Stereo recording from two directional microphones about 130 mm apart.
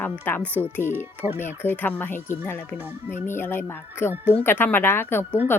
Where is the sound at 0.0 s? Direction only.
15° left (ahead or behind).